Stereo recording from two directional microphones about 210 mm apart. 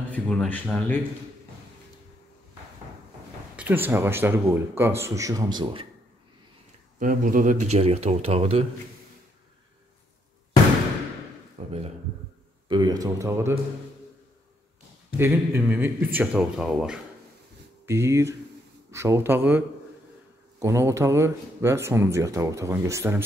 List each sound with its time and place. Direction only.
0.1 s speech: 5° left (ahead or behind)
3.5 s speech: 10° right (ahead or behind)
7.0 s speech: 40° right (ahead or behind)
11.6 s a man's voice: 30° right (ahead or behind)
12.6 s speech: 20° right (ahead or behind)
15.1 s speech: 10° right (ahead or behind)